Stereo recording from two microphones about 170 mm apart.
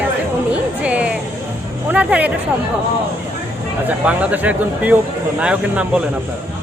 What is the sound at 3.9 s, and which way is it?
A woman's voice, 10° right (ahead or behind).